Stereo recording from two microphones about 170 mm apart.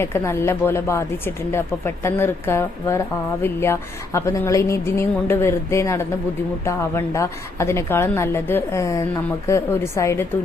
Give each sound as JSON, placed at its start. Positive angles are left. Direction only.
{"t": 0.0, "sound": "a woman's voice", "side_deg": 15}